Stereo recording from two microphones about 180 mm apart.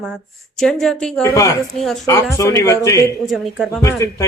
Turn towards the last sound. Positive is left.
turn(degrees=20)  # may be behind; listen again after turning